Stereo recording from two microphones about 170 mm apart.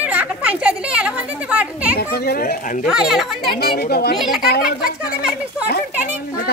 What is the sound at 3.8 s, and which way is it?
Speech, 70° left (ahead or behind).